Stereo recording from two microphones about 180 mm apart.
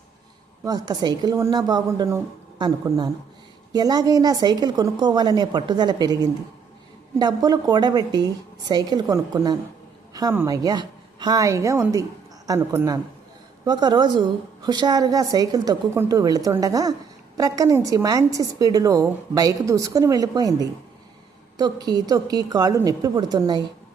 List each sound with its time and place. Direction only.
0.6 s a woman's voice: 20° right (ahead or behind)